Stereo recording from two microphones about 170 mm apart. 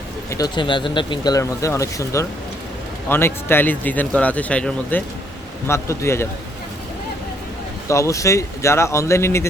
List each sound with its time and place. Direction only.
0.3 s speech: 20° left (ahead or behind)
7.9 s speech: 15° left (ahead or behind)